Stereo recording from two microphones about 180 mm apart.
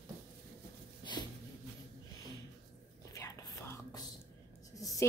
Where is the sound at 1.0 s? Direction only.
25° left (ahead or behind).